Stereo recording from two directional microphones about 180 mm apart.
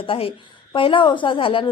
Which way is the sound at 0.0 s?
30° left (ahead or behind).